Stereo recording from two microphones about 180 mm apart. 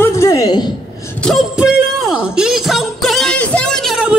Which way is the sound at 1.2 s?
Centre (ahead or behind).